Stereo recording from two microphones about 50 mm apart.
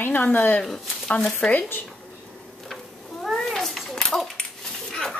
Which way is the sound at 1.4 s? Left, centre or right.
Centre.